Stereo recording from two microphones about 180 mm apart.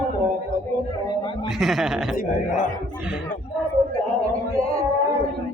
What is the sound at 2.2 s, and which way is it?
Speech, 45° left (ahead or behind).